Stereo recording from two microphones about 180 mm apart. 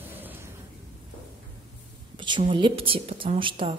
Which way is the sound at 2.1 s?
25° right (ahead or behind).